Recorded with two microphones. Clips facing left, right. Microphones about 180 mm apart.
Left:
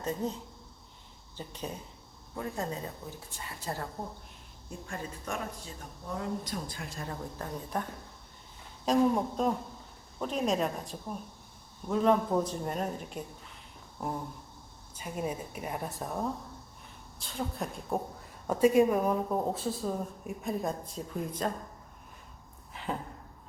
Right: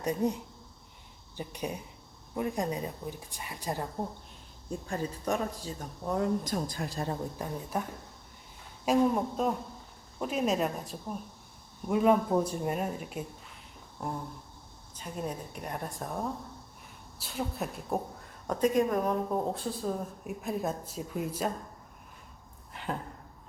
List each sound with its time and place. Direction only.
0.0 s a woman's voice: 15° right (ahead or behind)
1.4 s a woman's voice: 15° right (ahead or behind)
4.9 s speech: 35° right (ahead or behind)
7.3 s a woman's voice: 10° right (ahead or behind)
18.4 s speech: 10° left (ahead or behind); by 21.5 s 5° right (ahead or behind)
22.7 s a sound: centre (ahead or behind)